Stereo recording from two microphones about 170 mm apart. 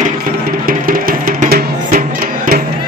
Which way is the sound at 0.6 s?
55° right (ahead or behind).